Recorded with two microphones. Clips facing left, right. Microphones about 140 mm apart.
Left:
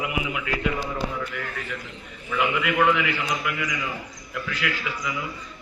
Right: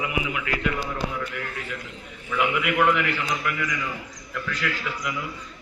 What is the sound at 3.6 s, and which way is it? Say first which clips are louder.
A man's voice: even; 15° left (ahead or behind).